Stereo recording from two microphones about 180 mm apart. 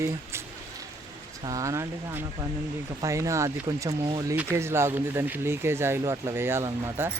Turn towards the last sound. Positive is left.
turn(degrees=-15)  # may be behind; listen again after turning